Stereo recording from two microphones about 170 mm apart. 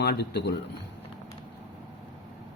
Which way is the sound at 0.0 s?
80° left.